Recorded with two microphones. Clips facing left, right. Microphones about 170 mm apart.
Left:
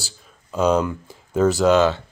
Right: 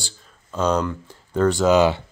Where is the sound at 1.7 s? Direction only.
10° right (ahead or behind).